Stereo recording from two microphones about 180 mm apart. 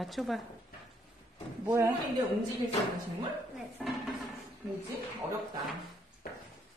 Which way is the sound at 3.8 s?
Centre (ahead or behind).